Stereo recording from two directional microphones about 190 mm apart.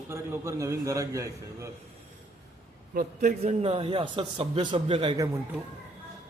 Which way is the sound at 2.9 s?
45° right (ahead or behind).